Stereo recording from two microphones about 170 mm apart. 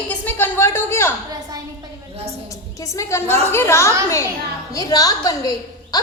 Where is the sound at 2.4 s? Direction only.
20° left (ahead or behind).